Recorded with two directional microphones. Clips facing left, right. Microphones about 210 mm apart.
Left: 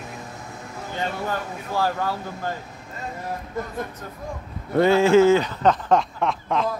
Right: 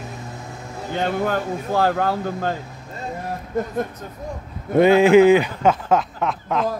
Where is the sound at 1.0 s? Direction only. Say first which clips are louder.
Right 6 dB; 60° right (ahead or behind).